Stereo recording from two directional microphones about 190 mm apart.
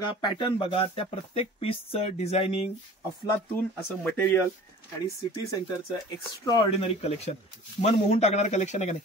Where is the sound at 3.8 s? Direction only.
5° left (ahead or behind).